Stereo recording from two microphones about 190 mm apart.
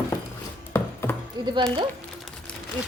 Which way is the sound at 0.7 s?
15° left (ahead or behind).